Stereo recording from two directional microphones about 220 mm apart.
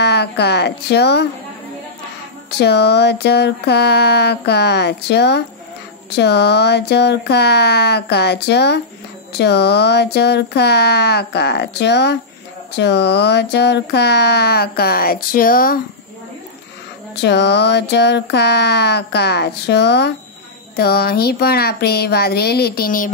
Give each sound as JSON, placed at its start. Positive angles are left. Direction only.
{"t": 0.0, "sound": "speech", "side_deg": 50}
{"t": 2.6, "sound": "speech", "side_deg": 50}
{"t": 17.2, "sound": "speech", "side_deg": 50}